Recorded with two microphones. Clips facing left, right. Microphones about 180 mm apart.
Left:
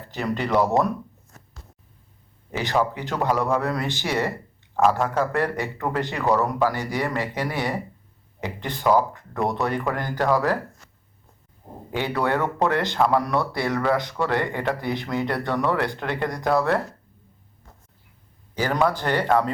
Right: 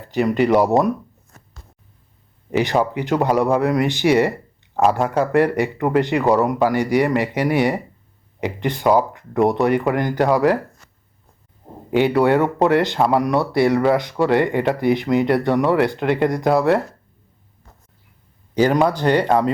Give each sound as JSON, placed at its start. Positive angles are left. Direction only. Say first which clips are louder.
{"t": 0.1, "sound": "speech", "louder": "right 8 dB", "side_deg": -15}
{"t": 2.5, "sound": "speech", "louder": "right 5 dB", "side_deg": -15}
{"t": 11.9, "sound": "speech", "louder": "right 9 dB", "side_deg": -20}
{"t": 18.5, "sound": "speech", "louder": "right 6 dB", "side_deg": -20}